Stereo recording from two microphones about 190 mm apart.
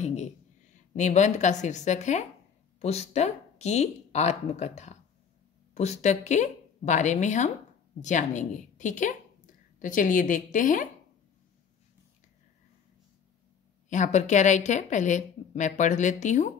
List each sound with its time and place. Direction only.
0.0 s a sound: 35° left (ahead or behind)
0.9 s a woman's voice: 40° left (ahead or behind)
13.8 s a woman's voice: 40° left (ahead or behind)